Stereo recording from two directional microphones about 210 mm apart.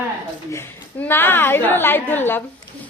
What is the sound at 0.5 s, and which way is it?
A woman's voice, 10° left (ahead or behind).